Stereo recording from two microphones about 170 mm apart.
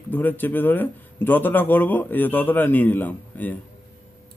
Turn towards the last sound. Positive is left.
turn(degrees=10)  # may be behind; listen again after turning